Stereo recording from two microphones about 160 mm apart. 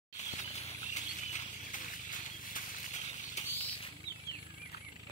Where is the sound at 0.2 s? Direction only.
45° left (ahead or behind).